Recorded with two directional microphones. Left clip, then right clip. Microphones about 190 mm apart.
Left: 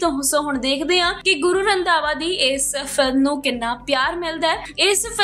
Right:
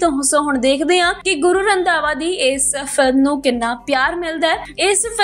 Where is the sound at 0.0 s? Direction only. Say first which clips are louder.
Right 4 dB; 20° right (ahead or behind).